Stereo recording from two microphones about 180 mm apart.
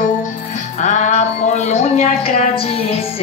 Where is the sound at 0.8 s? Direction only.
40° left (ahead or behind).